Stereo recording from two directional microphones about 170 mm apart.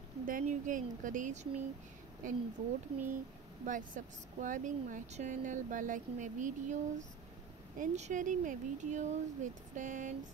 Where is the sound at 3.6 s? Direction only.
50° right (ahead or behind).